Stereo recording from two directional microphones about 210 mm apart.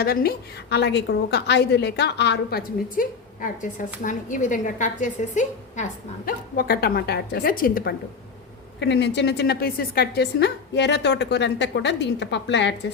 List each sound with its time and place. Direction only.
0.0 s a woman's voice: 45° left (ahead or behind)
8.8 s a woman's voice: 55° left (ahead or behind)